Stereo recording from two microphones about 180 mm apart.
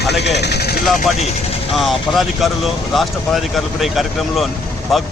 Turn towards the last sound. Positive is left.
turn(degrees=0)  # may be behind; listen again after turning